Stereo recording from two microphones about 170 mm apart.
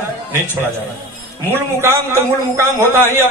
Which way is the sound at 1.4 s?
15° right (ahead or behind).